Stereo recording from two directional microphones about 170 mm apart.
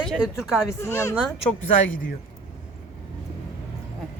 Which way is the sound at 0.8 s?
15° left (ahead or behind).